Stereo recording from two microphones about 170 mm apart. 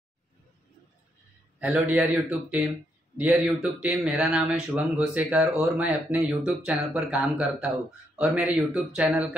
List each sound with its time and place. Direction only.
1.6 s speech: 5° right (ahead or behind)